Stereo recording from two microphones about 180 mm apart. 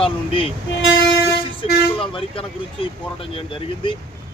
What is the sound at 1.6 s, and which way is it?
Speech, 30° left (ahead or behind).